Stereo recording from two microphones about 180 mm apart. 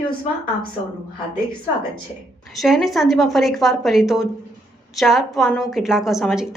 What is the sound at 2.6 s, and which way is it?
A woman's voice, centre (ahead or behind).